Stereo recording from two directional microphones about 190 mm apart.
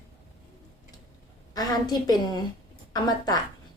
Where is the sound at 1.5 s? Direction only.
20° left (ahead or behind).